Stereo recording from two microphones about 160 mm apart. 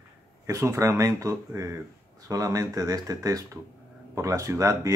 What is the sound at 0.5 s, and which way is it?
Speech, 20° right (ahead or behind).